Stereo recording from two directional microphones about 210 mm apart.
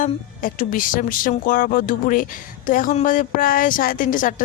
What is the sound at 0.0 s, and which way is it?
Speech, 40° left (ahead or behind).